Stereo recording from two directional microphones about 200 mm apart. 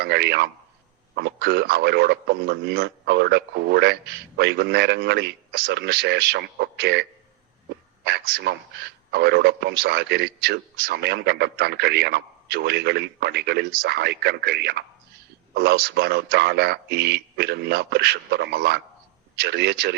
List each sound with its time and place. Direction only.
0.0 s speech: 55° right (ahead or behind)
8.0 s speech: 50° right (ahead or behind)